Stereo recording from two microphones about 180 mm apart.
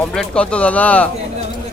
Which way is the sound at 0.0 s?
5° left (ahead or behind).